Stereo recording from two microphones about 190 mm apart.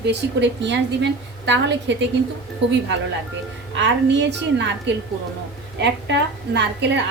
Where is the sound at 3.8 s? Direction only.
70° right (ahead or behind).